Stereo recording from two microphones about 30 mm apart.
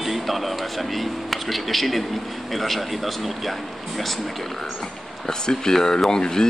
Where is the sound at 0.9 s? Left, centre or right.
Centre.